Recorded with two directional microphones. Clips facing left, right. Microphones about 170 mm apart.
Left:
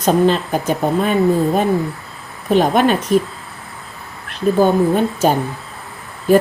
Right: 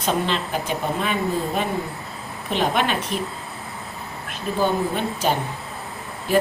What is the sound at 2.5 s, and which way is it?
Speech, 45° left (ahead or behind).